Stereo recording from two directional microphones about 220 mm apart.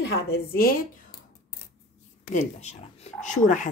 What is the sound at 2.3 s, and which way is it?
Speech, 30° left (ahead or behind).